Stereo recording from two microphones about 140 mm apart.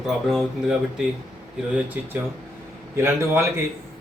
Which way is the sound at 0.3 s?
5° right (ahead or behind).